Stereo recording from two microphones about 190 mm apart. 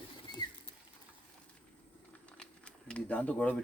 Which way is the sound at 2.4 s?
5° left (ahead or behind).